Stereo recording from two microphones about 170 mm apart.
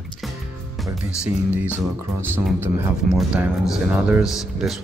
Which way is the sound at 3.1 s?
5° right (ahead or behind).